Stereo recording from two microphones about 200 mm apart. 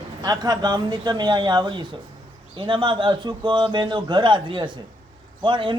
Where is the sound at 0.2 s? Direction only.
20° right (ahead or behind).